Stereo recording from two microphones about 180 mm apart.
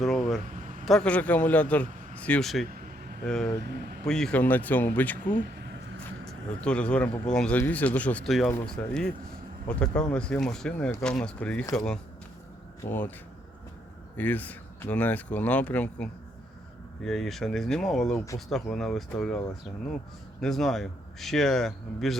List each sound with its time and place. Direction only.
0.0 s a sound: centre (ahead or behind)
0.9 s speech: 5° left (ahead or behind)
2.6 s a sound: 55° right (ahead or behind)
3.2 s speech: 5° left (ahead or behind)
3.6 s speech: 65° right (ahead or behind)
4.0 s speech: 5° left (ahead or behind)
6.2 s speech: 5° left (ahead or behind)
12.8 s speech: 10° left (ahead or behind)
14.2 s speech: 10° left (ahead or behind)
20.4 s speech: centre (ahead or behind)